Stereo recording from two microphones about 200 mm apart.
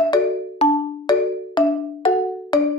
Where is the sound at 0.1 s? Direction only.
20° left (ahead or behind).